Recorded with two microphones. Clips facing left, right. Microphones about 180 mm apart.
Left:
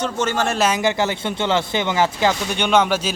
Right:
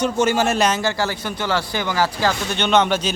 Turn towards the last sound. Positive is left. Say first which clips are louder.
# even
turn(degrees=5)  # may be behind; listen again after turning